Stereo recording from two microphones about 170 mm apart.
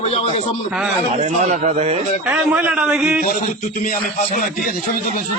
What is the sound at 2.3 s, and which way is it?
Speech, 10° right (ahead or behind).